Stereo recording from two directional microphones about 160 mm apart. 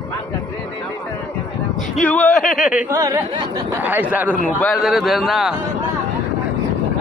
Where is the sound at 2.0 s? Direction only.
10° left (ahead or behind).